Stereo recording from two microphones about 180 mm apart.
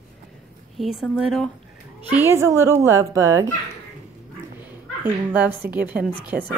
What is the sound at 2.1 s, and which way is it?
Speech, 15° right (ahead or behind).